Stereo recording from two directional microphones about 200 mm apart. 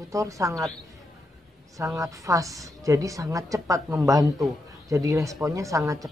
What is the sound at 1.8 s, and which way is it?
Speech, 15° right (ahead or behind).